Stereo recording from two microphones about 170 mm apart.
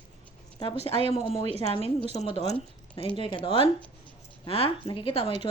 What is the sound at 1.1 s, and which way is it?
Speech, 35° left (ahead or behind).